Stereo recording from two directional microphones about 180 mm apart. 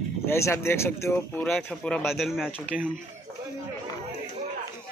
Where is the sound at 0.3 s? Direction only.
15° left (ahead or behind).